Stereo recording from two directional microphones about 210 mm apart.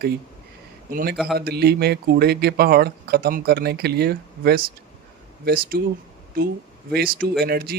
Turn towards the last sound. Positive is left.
turn(degrees=-45)  # may be behind; listen again after turning